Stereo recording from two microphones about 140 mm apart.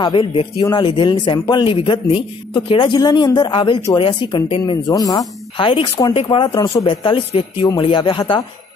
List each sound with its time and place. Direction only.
0.0 s speech: 35° left (ahead or behind)
5.6 s speech: 35° left (ahead or behind)